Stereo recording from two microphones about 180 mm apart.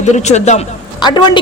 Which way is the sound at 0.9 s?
25° left (ahead or behind).